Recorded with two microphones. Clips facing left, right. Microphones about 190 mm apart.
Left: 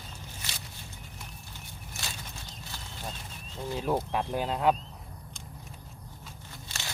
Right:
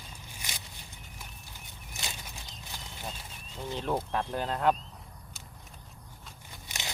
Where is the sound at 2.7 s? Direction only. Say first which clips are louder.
Right 1 dB; 15° right (ahead or behind).